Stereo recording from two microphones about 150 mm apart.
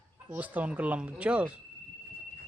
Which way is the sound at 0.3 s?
10° right (ahead or behind).